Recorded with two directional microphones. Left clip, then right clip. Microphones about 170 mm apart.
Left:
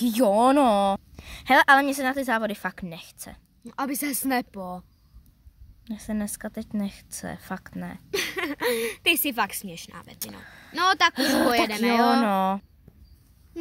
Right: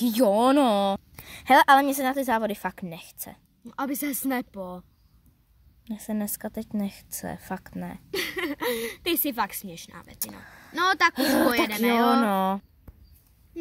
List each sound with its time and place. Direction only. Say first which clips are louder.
0.0 s a woman's voice: left 1 dB; centre (ahead or behind)
3.6 s speech: left 1 dB; 30° left (ahead or behind)
5.9 s a woman's voice: even; centre (ahead or behind)
8.1 s speech: left 1 dB; 20° left (ahead or behind)
10.4 s a woman's voice: left 1 dB; centre (ahead or behind)
10.7 s speech: left 1 dB; 20° left (ahead or behind)
11.1 s a woman's voice: left 1 dB; centre (ahead or behind)
11.9 s speech: left 1 dB; 30° left (ahead or behind)
12.2 s a woman's voice: left 1 dB; centre (ahead or behind)